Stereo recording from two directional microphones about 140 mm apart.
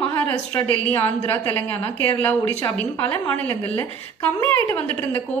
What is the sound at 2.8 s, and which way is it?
A woman's voice, 10° left (ahead or behind).